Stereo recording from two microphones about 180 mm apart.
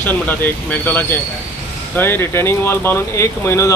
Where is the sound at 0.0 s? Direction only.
10° left (ahead or behind).